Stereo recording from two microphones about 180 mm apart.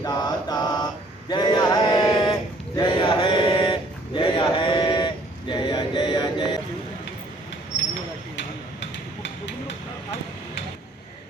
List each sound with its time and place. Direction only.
0.0 s mantra: 20° left (ahead or behind)
1.3 s male singing: 25° left (ahead or behind)
2.7 s chant: 25° left (ahead or behind)
8.4 s a sound: 80° left